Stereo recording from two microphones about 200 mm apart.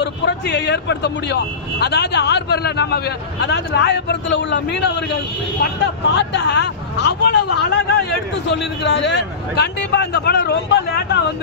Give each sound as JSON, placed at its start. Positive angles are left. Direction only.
{"t": 0.0, "sound": "a man's voice", "side_deg": 60}
{"t": 6.1, "sound": "a man's voice", "side_deg": 60}